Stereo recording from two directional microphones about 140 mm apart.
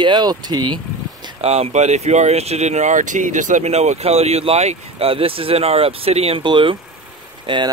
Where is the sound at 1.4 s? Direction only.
50° right (ahead or behind).